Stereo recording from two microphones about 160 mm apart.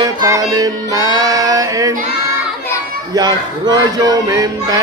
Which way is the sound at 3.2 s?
25° right (ahead or behind).